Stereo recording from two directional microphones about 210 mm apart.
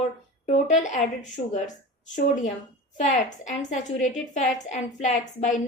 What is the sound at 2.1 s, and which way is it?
A woman's voice, 35° left (ahead or behind).